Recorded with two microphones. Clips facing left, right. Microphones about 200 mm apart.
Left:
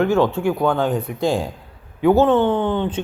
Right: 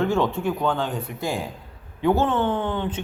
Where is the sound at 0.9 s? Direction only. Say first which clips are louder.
Left 7 dB; 30° left (ahead or behind).